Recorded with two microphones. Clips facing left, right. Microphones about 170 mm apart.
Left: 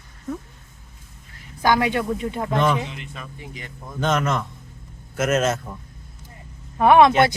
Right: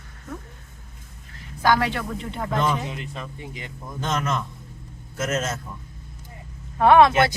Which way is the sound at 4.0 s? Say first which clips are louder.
Left 4 dB; 60° left (ahead or behind).